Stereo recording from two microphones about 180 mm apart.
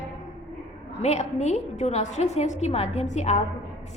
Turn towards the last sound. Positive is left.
turn(degrees=40)  # may be behind; listen again after turning